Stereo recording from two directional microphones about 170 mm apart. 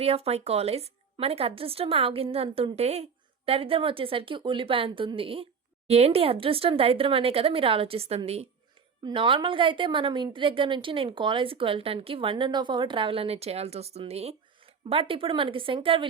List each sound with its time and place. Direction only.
0.0 s a woman's voice: 35° right (ahead or behind)